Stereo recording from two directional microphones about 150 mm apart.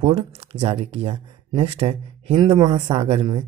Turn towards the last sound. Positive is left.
turn(degrees=-35)  # may be behind; listen again after turning